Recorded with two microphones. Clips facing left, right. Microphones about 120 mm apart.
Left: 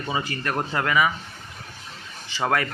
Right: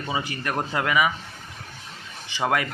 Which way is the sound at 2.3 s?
15° right (ahead or behind).